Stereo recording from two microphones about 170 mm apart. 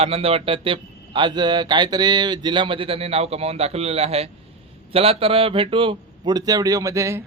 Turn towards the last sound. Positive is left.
turn(degrees=-15)  # may be behind; listen again after turning